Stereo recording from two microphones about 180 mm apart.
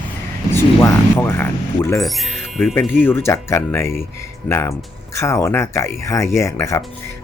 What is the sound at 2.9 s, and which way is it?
Speech, 10° left (ahead or behind).